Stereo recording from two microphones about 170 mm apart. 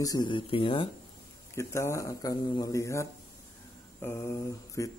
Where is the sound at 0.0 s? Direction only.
25° left (ahead or behind).